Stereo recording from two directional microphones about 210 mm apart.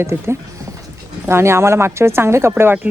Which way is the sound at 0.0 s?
10° right (ahead or behind).